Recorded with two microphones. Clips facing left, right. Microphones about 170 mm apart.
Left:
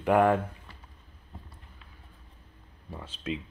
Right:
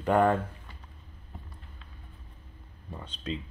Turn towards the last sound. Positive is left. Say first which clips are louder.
# left 1 dB
turn(degrees=5)  # may be behind; listen again after turning